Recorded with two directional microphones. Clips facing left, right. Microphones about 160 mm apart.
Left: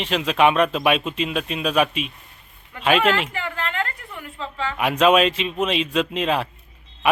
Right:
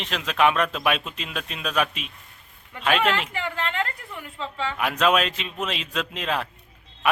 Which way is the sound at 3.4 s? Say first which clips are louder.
Even; 25° right (ahead or behind).